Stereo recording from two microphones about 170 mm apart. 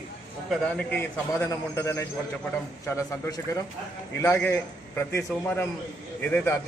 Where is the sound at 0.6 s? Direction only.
5° left (ahead or behind).